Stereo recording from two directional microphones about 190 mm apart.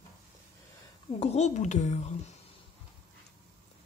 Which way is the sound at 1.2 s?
35° left (ahead or behind).